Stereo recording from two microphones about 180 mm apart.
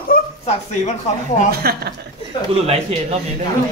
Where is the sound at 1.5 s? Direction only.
60° right (ahead or behind).